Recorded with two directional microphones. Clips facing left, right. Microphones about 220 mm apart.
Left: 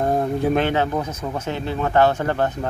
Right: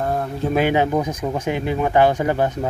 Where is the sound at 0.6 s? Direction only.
10° right (ahead or behind).